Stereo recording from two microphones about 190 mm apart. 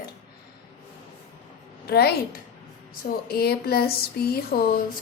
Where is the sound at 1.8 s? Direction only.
55° left (ahead or behind).